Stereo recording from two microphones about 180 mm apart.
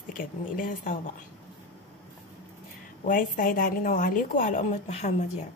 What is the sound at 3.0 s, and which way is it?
A woman's voice, 50° left (ahead or behind).